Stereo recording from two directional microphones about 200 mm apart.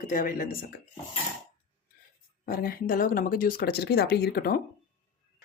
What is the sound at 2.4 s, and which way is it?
Speech, 50° left (ahead or behind).